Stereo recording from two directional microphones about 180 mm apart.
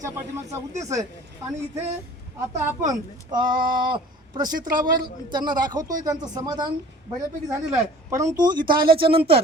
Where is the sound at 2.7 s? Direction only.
20° right (ahead or behind).